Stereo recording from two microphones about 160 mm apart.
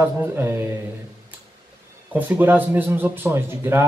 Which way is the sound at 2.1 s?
10° right (ahead or behind).